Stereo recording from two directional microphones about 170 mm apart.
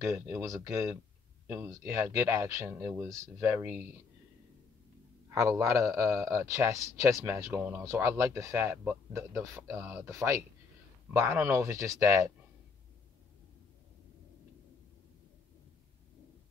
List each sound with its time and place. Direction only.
0.0 s a man's voice: 15° right (ahead or behind)
5.3 s a man's voice: 15° right (ahead or behind)